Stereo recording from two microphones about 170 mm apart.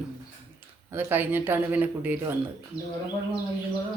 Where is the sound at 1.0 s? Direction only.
10° right (ahead or behind).